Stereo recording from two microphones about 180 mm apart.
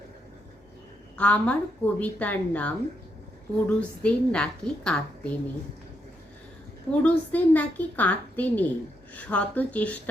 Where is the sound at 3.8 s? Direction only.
5° left (ahead or behind).